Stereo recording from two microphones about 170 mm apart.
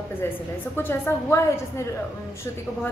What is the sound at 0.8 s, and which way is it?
Speech, 15° left (ahead or behind).